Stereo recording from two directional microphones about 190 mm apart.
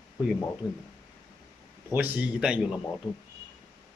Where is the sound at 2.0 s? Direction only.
5° right (ahead or behind).